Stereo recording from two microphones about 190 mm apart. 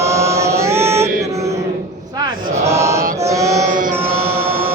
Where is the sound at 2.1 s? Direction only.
15° right (ahead or behind).